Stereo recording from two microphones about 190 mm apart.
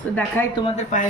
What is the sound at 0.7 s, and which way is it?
Speech, 40° left (ahead or behind).